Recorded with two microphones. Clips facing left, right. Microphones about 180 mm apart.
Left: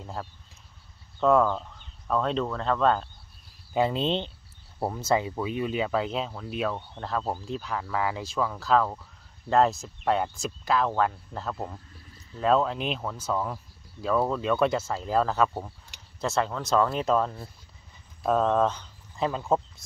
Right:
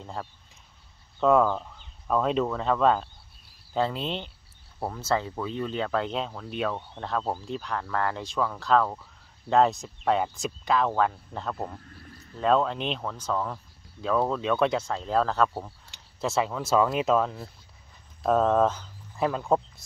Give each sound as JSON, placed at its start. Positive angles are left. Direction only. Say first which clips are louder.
{"t": 0.0, "sound": "speech", "louder": "even", "side_deg": 0}
{"t": 3.7, "sound": "speech", "louder": "left 3 dB", "side_deg": 15}